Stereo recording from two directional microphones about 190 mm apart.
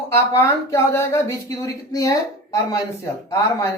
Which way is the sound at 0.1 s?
15° left (ahead or behind).